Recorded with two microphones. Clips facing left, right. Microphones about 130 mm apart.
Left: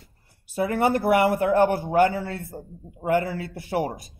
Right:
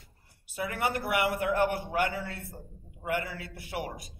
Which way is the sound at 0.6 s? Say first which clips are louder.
Left 9 dB; 35° left (ahead or behind).